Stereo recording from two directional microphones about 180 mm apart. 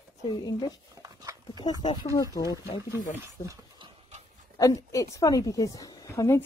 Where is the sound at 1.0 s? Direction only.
20° right (ahead or behind).